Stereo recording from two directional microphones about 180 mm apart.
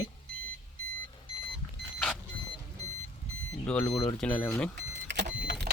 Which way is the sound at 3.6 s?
5° left (ahead or behind).